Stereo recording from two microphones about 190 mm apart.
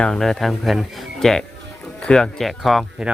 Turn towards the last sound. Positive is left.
turn(degrees=0)  # may be behind; listen again after turning